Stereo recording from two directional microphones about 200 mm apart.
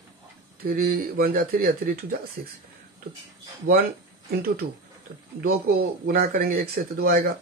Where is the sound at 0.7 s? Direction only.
50° right (ahead or behind).